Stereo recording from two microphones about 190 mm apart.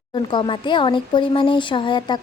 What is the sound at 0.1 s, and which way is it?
Speech, 25° left (ahead or behind).